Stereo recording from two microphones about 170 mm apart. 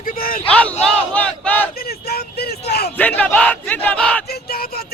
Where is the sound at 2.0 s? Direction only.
70° left (ahead or behind).